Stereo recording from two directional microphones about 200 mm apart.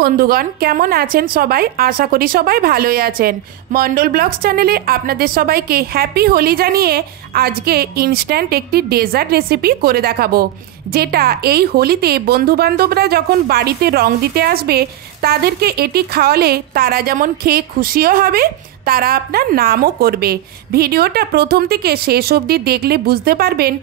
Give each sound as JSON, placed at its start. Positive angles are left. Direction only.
{"t": 0.0, "sound": "speech", "side_deg": -45}